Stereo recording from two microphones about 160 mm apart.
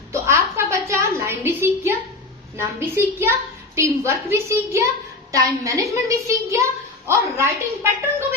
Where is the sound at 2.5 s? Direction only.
15° right (ahead or behind).